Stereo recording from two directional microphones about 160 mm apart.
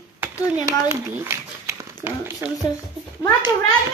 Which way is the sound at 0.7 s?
15° right (ahead or behind).